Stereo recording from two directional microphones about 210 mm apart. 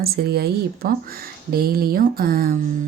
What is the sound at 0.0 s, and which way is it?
A woman's voice, 45° right (ahead or behind).